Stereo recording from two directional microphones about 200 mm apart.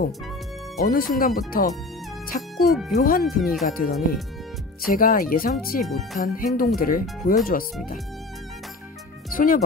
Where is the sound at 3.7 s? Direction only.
45° left (ahead or behind).